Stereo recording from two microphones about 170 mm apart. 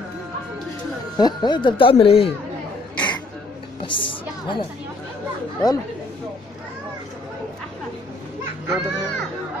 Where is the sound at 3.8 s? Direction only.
30° left (ahead or behind).